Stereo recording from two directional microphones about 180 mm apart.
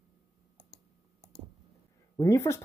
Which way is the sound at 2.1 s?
15° left (ahead or behind).